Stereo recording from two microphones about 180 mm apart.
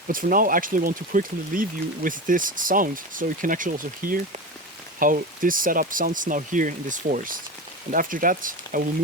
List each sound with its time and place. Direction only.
0.1 s speech: 50° right (ahead or behind)